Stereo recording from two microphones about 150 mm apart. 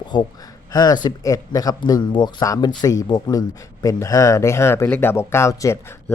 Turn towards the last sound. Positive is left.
turn(degrees=20)  # may be behind; listen again after turning